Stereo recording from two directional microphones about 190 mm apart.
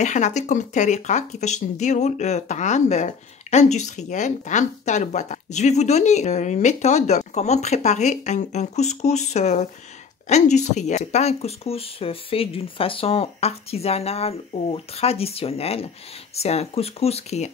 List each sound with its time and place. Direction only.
0.0 s speech: 40° left (ahead or behind)